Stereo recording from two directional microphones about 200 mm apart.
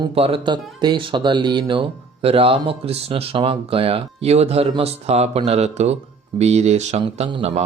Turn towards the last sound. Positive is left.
turn(degrees=-30)  # may be behind; listen again after turning